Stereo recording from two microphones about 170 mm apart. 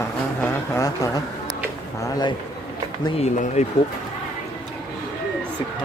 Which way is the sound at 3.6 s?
40° left (ahead or behind).